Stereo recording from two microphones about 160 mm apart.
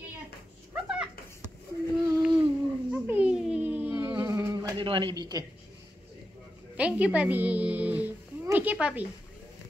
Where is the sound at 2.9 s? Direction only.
10° right (ahead or behind); by 5.4 s 25° right (ahead or behind).